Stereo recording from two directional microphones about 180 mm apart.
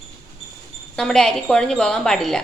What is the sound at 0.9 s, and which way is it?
A woman's voice, 5° left (ahead or behind).